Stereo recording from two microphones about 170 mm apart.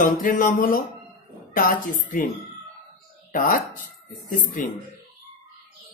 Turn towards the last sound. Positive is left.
turn(degrees=50)  # may be behind; listen again after turning